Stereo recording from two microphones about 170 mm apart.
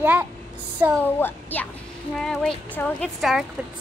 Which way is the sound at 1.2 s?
10° left (ahead or behind).